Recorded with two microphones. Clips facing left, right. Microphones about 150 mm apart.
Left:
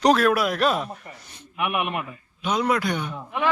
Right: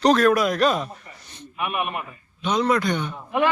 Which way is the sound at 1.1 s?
50° left (ahead or behind).